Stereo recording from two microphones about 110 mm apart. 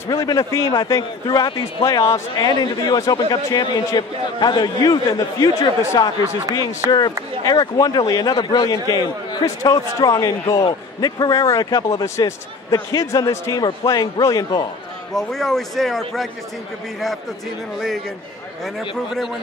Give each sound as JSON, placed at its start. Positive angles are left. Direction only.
{"t": 0.1, "sound": "a man's voice", "side_deg": 35}
{"t": 1.2, "sound": "a man's voice", "side_deg": 40}
{"t": 2.3, "sound": "a man's voice", "side_deg": 40}
{"t": 6.8, "sound": "speech", "side_deg": -35}
{"t": 7.4, "sound": "a man's voice", "side_deg": 40}
{"t": 15.1, "sound": "a man's voice", "side_deg": 5}
{"t": 17.7, "sound": "a man's voice", "side_deg": 0}